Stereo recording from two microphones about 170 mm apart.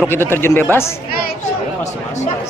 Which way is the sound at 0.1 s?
15° left (ahead or behind).